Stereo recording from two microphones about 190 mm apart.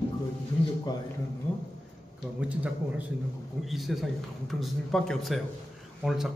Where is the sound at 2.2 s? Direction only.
10° left (ahead or behind).